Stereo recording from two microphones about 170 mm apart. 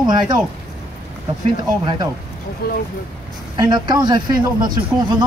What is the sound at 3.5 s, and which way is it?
Speech, 25° right (ahead or behind).